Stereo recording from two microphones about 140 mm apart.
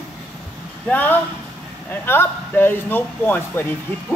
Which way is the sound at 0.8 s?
15° left (ahead or behind).